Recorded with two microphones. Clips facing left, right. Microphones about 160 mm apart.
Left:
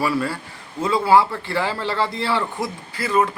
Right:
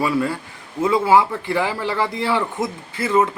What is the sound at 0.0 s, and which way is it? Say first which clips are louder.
A man's voice: right 2 dB; 20° right (ahead or behind).